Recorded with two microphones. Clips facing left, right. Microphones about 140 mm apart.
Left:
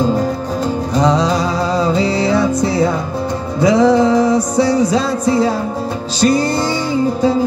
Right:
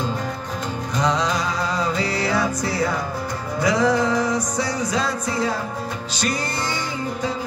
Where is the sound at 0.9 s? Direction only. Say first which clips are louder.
Left 7 dB; 35° left (ahead or behind).